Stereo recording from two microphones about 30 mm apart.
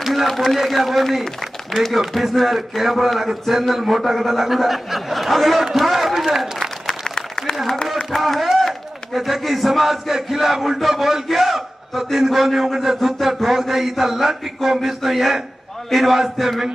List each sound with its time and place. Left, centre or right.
0.0 s a sound: centre
0.4 s a man's voice: centre
6.9 s applause: centre
8.2 s a man's voice: centre